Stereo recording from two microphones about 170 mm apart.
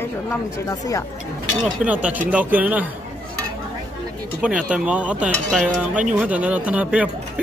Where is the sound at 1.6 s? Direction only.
5° right (ahead or behind).